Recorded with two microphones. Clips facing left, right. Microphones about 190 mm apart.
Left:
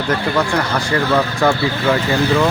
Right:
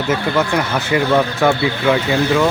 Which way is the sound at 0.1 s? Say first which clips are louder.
Right 1 dB; 5° right (ahead or behind).